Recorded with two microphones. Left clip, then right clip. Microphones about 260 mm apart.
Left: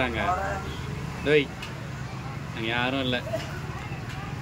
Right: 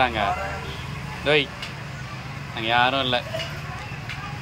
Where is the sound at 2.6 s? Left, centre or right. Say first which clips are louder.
Right 7 dB; centre.